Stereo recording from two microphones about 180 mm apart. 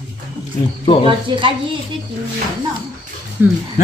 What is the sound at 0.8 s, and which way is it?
Speech, 30° left (ahead or behind).